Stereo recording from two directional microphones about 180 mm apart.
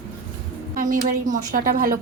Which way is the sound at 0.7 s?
50° right (ahead or behind).